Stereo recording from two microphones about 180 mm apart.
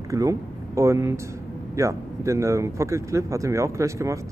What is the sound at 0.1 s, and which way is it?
Speech, 20° right (ahead or behind).